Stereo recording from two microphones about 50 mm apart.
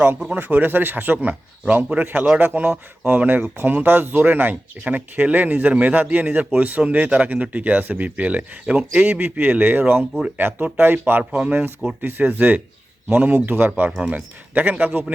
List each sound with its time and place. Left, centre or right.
0.3 s speech: right
9.0 s speech: right
11.2 s speech: right
12.0 s speech: right